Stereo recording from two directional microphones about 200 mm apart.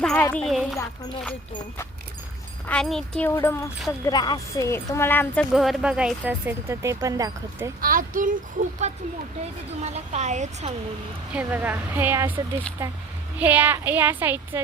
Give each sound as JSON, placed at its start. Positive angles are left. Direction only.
{"t": 0.0, "sound": "speech", "side_deg": 5}
{"t": 2.6, "sound": "speech", "side_deg": 5}
{"t": 7.8, "sound": "speech", "side_deg": -45}
{"t": 8.8, "sound": "speech", "side_deg": -30}
{"t": 11.3, "sound": "a woman's voice", "side_deg": -5}